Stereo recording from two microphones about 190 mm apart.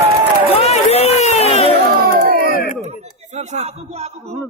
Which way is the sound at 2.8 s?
35° right (ahead or behind).